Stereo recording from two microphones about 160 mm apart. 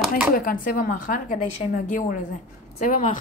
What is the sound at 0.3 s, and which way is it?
A woman's voice, 60° left (ahead or behind).